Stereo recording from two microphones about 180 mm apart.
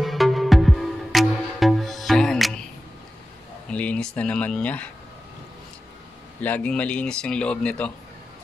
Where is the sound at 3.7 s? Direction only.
5° left (ahead or behind).